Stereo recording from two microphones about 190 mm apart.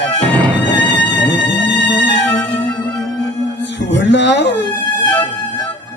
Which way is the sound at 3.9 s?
65° left (ahead or behind).